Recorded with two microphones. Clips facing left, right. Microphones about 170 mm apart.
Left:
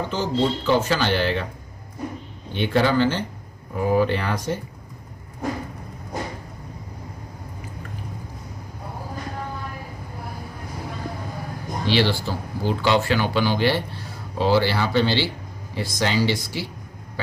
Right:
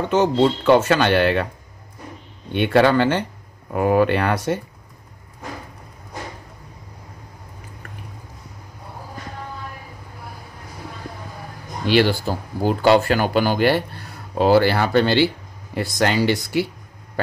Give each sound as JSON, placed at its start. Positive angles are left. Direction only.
{"t": 0.1, "sound": "speech", "side_deg": -70}
{"t": 2.5, "sound": "speech", "side_deg": -65}
{"t": 11.8, "sound": "speech", "side_deg": -50}